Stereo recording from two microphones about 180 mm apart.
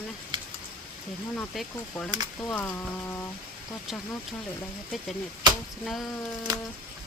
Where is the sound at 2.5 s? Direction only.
10° left (ahead or behind).